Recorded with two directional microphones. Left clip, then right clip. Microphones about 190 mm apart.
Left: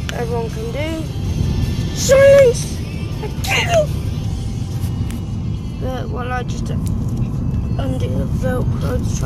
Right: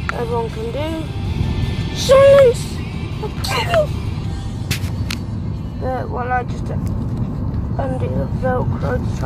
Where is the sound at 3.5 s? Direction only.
20° right (ahead or behind).